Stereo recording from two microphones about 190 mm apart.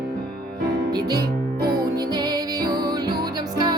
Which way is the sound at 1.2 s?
55° right (ahead or behind).